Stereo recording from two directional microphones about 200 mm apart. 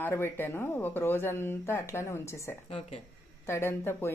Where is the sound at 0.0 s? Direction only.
10° left (ahead or behind).